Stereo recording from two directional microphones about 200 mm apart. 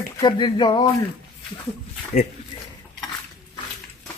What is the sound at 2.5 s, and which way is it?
Dishes, 25° left (ahead or behind).